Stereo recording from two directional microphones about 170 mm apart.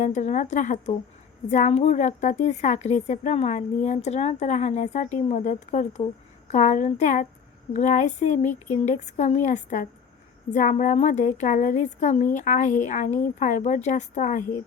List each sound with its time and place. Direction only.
0.0 s a woman's voice: 45° left (ahead or behind)